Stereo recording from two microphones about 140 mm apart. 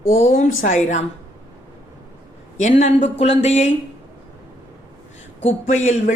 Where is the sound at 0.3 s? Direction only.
60° left (ahead or behind).